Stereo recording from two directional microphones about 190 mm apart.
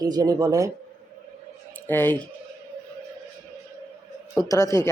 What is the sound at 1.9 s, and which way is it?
Speech, 10° left (ahead or behind).